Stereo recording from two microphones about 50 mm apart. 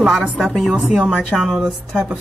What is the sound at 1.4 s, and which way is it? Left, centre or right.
Speech, centre.